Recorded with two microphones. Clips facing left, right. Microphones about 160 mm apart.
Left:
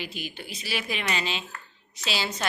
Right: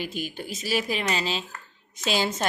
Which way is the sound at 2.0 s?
50° right (ahead or behind).